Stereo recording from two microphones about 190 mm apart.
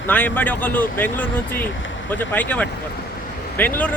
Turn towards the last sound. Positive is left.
turn(degrees=10)  # may be behind; listen again after turning